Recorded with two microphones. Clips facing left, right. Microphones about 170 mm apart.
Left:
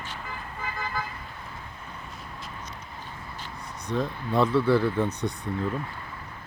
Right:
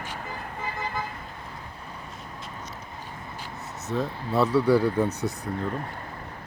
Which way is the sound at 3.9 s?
5° right (ahead or behind).